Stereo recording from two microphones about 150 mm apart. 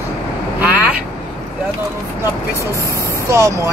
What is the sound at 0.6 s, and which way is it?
Vehicle, 10° right (ahead or behind).